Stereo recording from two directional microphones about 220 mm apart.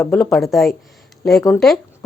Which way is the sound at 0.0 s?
Centre (ahead or behind).